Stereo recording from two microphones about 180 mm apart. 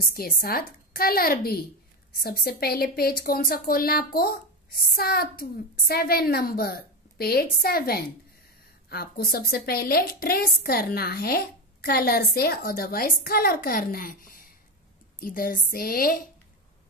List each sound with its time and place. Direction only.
0.0 s a woman's voice: 55° left (ahead or behind)